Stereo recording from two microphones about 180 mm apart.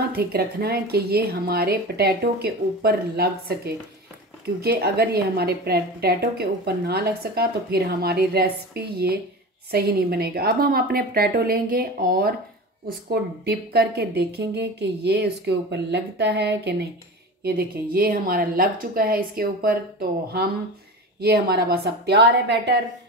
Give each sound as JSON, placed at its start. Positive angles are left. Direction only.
{"t": 0.1, "sound": "a woman's voice", "side_deg": -60}
{"t": 13.1, "sound": "a woman's voice", "side_deg": -65}
{"t": 21.2, "sound": "a woman's voice", "side_deg": -60}